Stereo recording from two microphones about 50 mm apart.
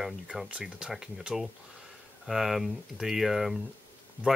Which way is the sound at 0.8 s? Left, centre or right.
Centre.